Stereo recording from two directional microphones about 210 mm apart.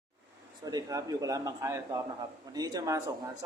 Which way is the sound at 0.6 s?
20° right (ahead or behind).